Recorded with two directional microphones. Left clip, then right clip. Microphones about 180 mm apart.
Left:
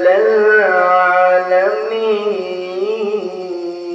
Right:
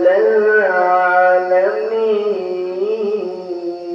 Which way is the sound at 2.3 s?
10° right (ahead or behind).